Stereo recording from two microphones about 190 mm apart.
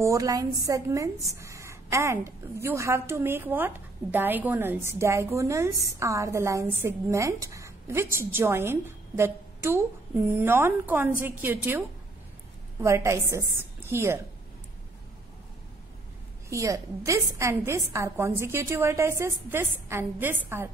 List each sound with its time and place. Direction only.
0.0 s a woman's voice: 15° right (ahead or behind)
12.8 s a woman's voice: 15° right (ahead or behind)
16.4 s a woman's voice: 15° right (ahead or behind)